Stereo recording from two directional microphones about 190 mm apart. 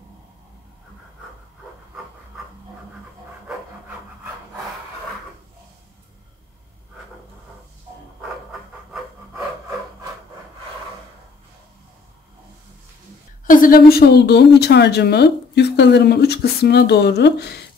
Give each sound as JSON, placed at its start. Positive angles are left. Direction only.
{"t": 13.5, "sound": "a woman's voice", "side_deg": 45}